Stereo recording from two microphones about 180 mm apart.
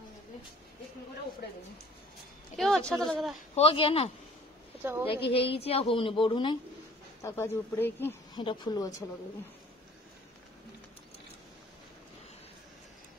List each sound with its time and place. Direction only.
2.5 s a woman's voice: centre (ahead or behind)
2.8 s speech: 15° right (ahead or behind)
3.1 s a woman's voice: centre (ahead or behind)
3.5 s a man's voice: 30° left (ahead or behind)
7.2 s speech: 15° left (ahead or behind)
8.4 s a woman's voice: 25° left (ahead or behind)